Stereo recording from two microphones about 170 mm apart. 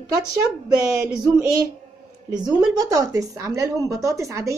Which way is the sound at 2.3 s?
25° right (ahead or behind).